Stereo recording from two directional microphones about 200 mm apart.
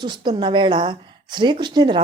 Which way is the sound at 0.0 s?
20° right (ahead or behind).